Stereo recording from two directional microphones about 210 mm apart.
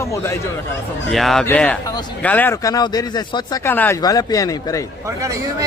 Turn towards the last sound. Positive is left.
turn(degrees=15)  # may be behind; listen again after turning